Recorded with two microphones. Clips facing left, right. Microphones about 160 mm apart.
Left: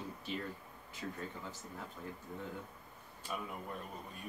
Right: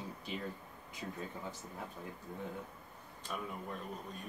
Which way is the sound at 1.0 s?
20° right (ahead or behind).